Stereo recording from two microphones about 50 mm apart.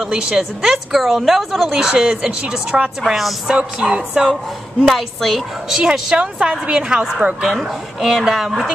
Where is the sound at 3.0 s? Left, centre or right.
Centre.